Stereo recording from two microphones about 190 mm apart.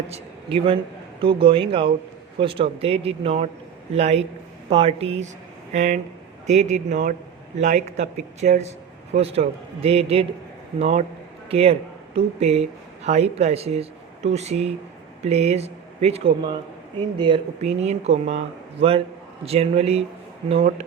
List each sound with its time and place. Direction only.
0.1 s a man's voice: 30° right (ahead or behind)